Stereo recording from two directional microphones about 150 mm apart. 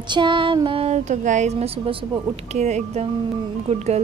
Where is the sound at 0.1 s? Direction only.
30° right (ahead or behind).